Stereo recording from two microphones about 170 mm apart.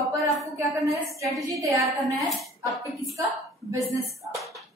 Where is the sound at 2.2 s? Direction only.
Centre (ahead or behind).